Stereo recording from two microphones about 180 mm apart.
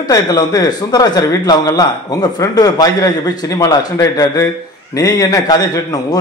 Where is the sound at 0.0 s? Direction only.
20° left (ahead or behind).